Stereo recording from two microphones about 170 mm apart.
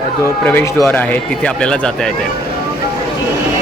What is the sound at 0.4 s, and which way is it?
Speech, 15° left (ahead or behind).